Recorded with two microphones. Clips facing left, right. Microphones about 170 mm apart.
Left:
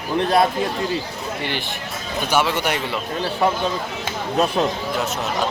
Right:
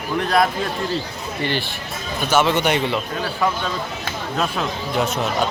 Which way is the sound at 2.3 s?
10° left (ahead or behind).